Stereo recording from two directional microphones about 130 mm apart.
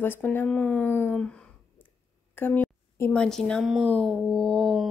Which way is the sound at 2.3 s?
15° left (ahead or behind).